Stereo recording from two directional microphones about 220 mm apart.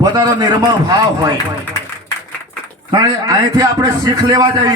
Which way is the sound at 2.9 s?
15° right (ahead or behind).